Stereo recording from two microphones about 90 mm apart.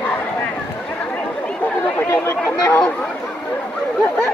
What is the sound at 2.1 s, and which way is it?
Chatter, 35° left (ahead or behind).